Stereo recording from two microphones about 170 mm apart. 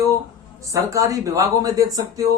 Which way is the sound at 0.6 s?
20° right (ahead or behind).